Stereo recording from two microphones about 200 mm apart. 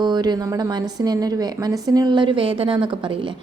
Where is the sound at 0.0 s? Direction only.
20° right (ahead or behind).